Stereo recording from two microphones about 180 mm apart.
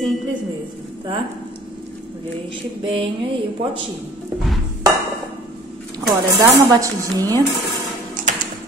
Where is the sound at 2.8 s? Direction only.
30° right (ahead or behind).